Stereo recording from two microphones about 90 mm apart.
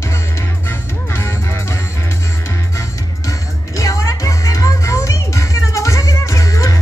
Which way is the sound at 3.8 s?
35° left (ahead or behind).